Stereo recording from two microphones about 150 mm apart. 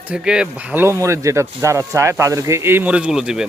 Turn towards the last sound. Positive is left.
turn(degrees=-5)  # may be behind; listen again after turning